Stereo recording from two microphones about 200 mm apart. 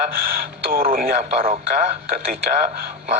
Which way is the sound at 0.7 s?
45° right (ahead or behind).